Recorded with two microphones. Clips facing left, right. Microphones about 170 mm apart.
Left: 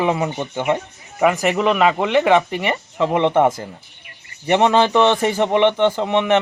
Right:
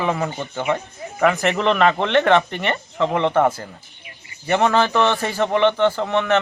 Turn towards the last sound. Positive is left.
turn(degrees=15)  # may be behind; listen again after turning